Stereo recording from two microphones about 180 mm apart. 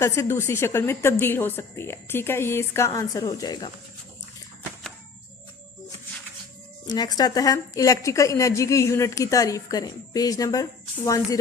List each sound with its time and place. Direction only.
0.0 s a woman's voice: 15° left (ahead or behind)
6.8 s a woman's voice: 20° left (ahead or behind)